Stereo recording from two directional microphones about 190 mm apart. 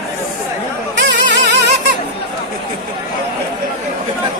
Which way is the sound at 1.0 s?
65° right (ahead or behind).